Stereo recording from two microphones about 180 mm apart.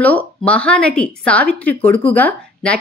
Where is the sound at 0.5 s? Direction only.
5° left (ahead or behind).